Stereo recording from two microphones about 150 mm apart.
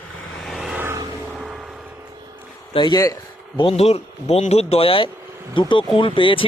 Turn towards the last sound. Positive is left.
turn(degrees=35)  # may be behind; listen again after turning